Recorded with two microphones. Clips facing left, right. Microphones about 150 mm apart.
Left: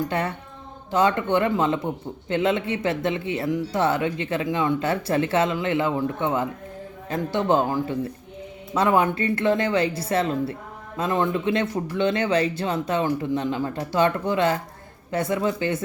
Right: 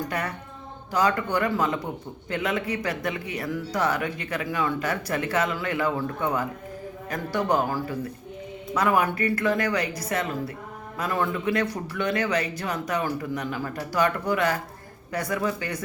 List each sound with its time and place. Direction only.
0.1 s speech: 25° left (ahead or behind)